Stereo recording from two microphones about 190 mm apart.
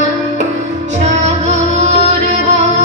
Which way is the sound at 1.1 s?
35° right (ahead or behind).